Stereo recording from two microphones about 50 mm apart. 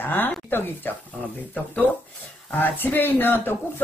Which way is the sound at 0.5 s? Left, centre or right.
Left.